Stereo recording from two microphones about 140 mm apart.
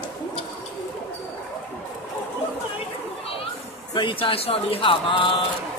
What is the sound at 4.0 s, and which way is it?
Speech, 40° left (ahead or behind).